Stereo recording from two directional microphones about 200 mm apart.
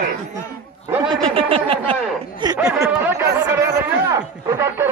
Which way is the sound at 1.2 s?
30° right (ahead or behind).